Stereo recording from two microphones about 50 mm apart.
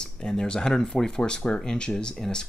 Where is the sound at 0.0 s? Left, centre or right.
Centre.